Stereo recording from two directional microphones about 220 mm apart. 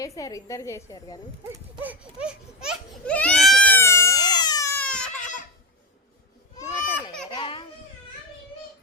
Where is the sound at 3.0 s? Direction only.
5° left (ahead or behind).